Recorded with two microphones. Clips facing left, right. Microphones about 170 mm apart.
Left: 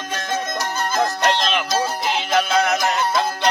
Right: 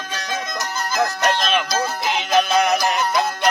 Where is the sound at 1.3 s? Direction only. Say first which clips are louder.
Even; 25° left (ahead or behind).